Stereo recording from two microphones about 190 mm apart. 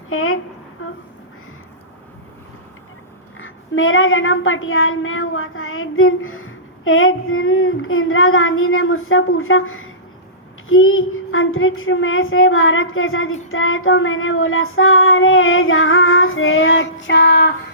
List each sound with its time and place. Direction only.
0.1 s a woman's voice: 90° left
0.8 s a sound: 90° left
3.4 s a woman's voice: 90° left; by 17.5 s 65° left (ahead or behind)